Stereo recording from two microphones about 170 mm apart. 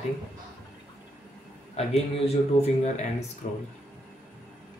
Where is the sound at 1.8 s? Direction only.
40° left (ahead or behind).